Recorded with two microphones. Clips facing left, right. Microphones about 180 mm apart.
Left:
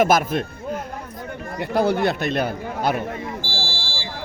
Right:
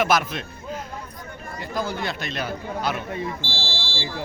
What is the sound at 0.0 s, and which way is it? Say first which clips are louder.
Speech: left 4 dB; 50° left (ahead or behind).